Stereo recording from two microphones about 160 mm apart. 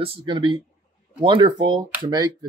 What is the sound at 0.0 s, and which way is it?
Speech, 35° right (ahead or behind).